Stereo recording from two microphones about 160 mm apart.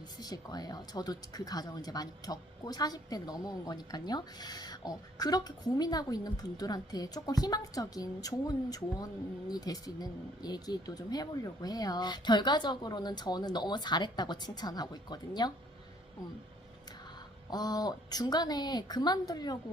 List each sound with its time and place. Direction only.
0.2 s speech: 25° left (ahead or behind)
17.5 s speech: 25° left (ahead or behind)